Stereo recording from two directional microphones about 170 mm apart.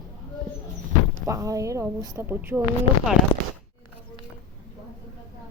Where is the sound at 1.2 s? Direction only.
20° right (ahead or behind).